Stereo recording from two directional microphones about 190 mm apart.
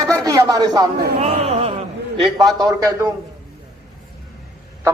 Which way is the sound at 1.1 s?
30° right (ahead or behind).